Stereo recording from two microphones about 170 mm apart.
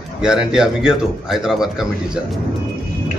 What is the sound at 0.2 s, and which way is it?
A man's voice, 5° right (ahead or behind).